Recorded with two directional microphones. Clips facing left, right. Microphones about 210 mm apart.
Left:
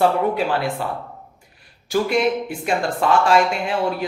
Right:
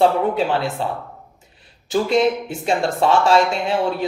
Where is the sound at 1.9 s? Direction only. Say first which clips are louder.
Right 2 dB; 25° right (ahead or behind).